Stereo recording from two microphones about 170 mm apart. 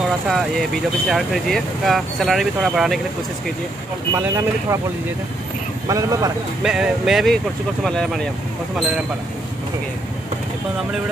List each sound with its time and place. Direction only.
0.3 s speech: centre (ahead or behind)
4.1 s speech: 20° right (ahead or behind)
5.9 s speech: 20° right (ahead or behind)
6.6 s speech: 5° right (ahead or behind)